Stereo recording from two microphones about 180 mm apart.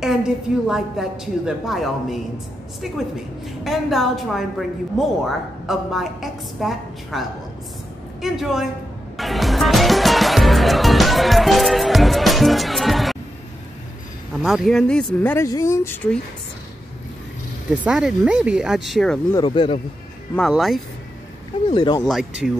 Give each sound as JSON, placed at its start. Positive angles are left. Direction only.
{"t": 0.0, "sound": "a woman's voice", "side_deg": -5}
{"t": 3.6, "sound": "a woman's voice", "side_deg": 0}
{"t": 9.1, "sound": "music", "side_deg": 0}
{"t": 14.4, "sound": "speech", "side_deg": 0}
{"t": 17.6, "sound": "a woman's voice", "side_deg": -5}
{"t": 19.3, "sound": "speech", "side_deg": 25}
{"t": 20.3, "sound": "a woman's voice", "side_deg": 0}
{"t": 21.6, "sound": "speech", "side_deg": 25}
{"t": 22.0, "sound": "a woman's voice", "side_deg": -5}